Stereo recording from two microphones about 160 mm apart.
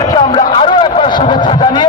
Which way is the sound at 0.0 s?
25° left (ahead or behind).